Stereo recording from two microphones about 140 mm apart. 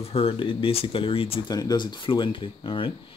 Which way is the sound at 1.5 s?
30° left (ahead or behind).